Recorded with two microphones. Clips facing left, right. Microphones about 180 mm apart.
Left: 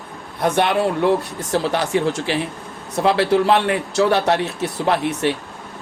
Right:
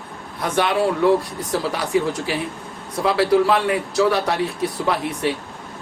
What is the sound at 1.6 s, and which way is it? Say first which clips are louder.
Speech: left 4 dB; 70° left (ahead or behind).